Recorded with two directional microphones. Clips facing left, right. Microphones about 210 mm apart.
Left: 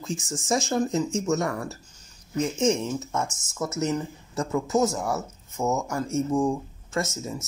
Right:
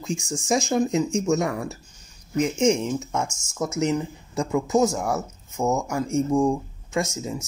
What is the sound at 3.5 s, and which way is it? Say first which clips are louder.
Speech: right 3 dB; 15° right (ahead or behind).